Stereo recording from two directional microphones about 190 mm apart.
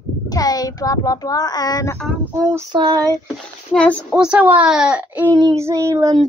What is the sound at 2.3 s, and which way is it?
Speech, 15° right (ahead or behind).